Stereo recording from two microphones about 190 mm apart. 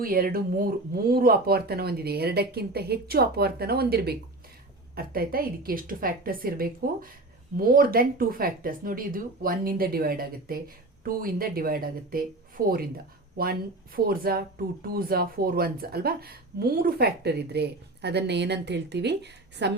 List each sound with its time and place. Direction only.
0.0 s speech: 50° right (ahead or behind)